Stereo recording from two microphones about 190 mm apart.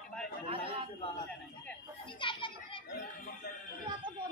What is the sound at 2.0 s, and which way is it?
Children playing, 25° left (ahead or behind).